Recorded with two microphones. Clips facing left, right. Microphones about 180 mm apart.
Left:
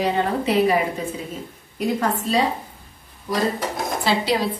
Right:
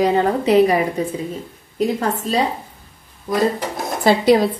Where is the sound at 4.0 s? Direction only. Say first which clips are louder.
Right 9 dB; 50° right (ahead or behind).